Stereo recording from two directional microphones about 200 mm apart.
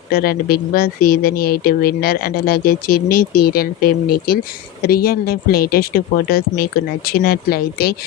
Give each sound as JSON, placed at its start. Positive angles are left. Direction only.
{"t": 0.1, "sound": "speech", "side_deg": 50}